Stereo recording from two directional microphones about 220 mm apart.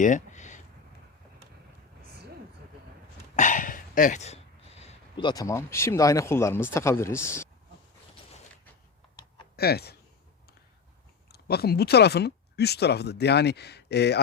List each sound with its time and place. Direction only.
0.0 s a sound: 35° left (ahead or behind)
3.3 s speech: 35° left (ahead or behind); by 7.4 s 10° left (ahead or behind)
9.6 s speech: 45° left (ahead or behind)
11.3 s speech: 45° left (ahead or behind)